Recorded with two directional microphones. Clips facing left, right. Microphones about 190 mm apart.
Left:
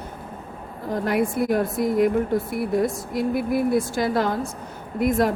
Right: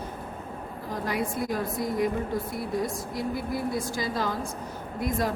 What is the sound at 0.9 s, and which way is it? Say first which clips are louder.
A woman's voice: left 7 dB; 60° left (ahead or behind).